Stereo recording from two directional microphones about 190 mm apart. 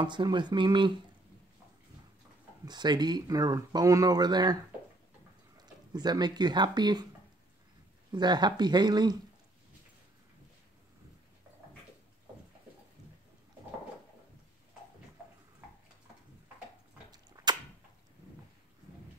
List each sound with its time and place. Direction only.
0.0 s speech: 25° right (ahead or behind)
2.6 s speech: 20° right (ahead or behind)
5.6 s speech: 20° right (ahead or behind)
8.1 s speech: 20° right (ahead or behind)